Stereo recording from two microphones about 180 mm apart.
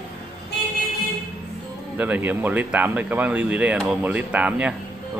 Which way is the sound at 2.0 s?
10° right (ahead or behind).